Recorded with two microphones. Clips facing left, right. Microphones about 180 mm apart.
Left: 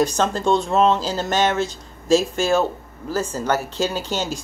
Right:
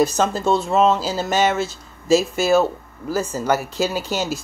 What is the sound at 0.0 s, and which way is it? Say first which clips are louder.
Speech: right 1 dB; 5° right (ahead or behind).